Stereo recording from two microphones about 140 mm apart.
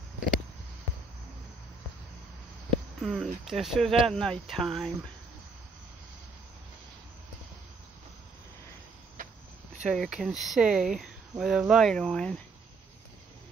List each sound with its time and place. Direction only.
3.0 s speech: centre (ahead or behind)
9.2 s a sound: 70° right (ahead or behind)
9.9 s speech: 5° right (ahead or behind)